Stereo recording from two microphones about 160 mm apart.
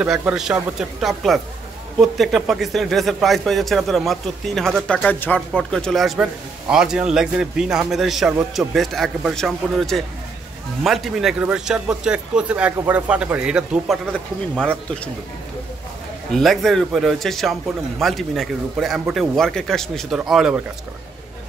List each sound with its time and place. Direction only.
0.0 s speech: 5° right (ahead or behind)
14.1 s speech: 5° left (ahead or behind)
16.3 s speech: centre (ahead or behind)